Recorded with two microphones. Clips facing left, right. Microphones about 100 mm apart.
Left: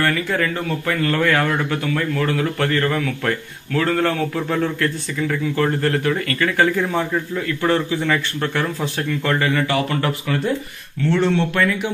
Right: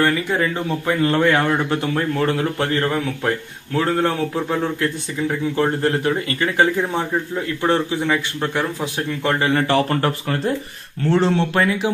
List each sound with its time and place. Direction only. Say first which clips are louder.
0.0 s speech: right 1 dB; 20° right (ahead or behind)
9.3 s speech: right 2 dB; 30° right (ahead or behind)